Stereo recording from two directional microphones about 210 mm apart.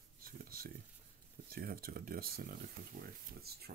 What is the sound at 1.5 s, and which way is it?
Speech, 45° right (ahead or behind).